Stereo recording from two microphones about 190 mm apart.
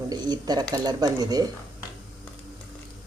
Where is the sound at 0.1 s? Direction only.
20° right (ahead or behind).